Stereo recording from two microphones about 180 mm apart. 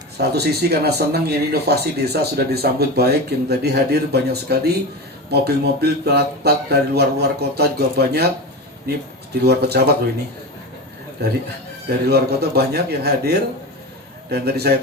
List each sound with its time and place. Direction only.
0.2 s speech: 65° right (ahead or behind)
11.9 s speech: 60° right (ahead or behind)